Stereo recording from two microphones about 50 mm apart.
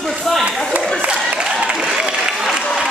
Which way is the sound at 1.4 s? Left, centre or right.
Centre.